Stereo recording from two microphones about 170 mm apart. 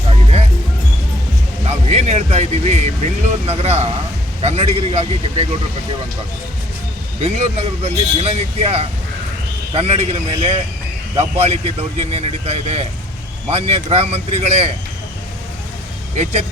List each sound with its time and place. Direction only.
0.1 s music: 35° right (ahead or behind)
1.6 s speech: 40° right (ahead or behind)
7.2 s speech: 40° right (ahead or behind)